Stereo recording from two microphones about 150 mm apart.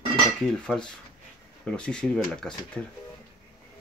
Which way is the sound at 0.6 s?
5° left (ahead or behind).